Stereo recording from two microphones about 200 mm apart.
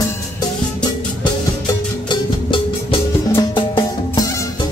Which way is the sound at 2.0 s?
25° left (ahead or behind).